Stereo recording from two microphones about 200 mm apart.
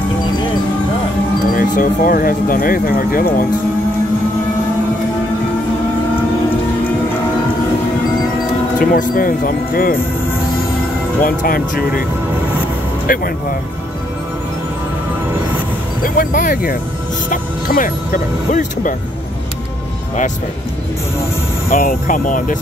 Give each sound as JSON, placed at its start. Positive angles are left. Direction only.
{"t": 1.5, "sound": "speech", "side_deg": 45}
{"t": 8.7, "sound": "speech", "side_deg": 45}
{"t": 11.2, "sound": "speech", "side_deg": 45}
{"t": 13.0, "sound": "speech", "side_deg": 45}
{"t": 16.0, "sound": "speech", "side_deg": 45}
{"t": 21.6, "sound": "speech", "side_deg": 45}